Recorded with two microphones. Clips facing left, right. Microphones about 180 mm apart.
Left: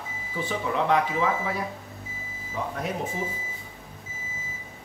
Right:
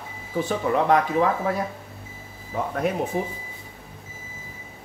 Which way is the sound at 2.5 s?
60° right (ahead or behind).